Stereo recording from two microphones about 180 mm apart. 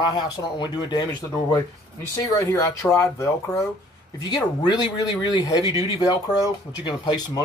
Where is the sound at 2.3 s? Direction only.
20° left (ahead or behind).